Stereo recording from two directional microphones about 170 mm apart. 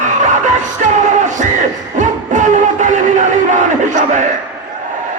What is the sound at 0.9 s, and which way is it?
Music, 45° right (ahead or behind).